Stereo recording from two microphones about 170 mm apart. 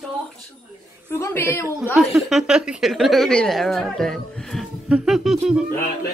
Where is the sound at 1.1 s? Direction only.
15° left (ahead or behind).